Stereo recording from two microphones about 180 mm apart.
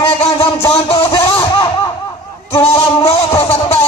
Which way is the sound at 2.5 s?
35° left (ahead or behind).